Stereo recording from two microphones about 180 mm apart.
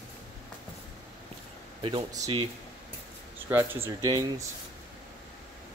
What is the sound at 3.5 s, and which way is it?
Speech, 10° right (ahead or behind).